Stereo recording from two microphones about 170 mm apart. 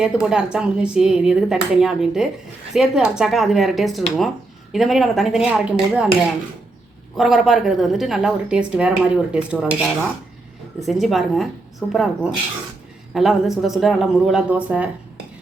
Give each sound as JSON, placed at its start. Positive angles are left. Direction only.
{"t": 0.0, "sound": "speech", "side_deg": -5}
{"t": 7.2, "sound": "speech", "side_deg": 0}
{"t": 9.3, "sound": "dishes", "side_deg": -5}
{"t": 10.8, "sound": "speech", "side_deg": 0}